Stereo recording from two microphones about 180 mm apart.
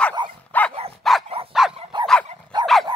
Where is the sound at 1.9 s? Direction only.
25° right (ahead or behind).